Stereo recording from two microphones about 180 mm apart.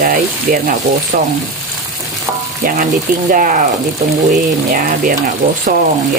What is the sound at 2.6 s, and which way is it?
Speech, 50° right (ahead or behind).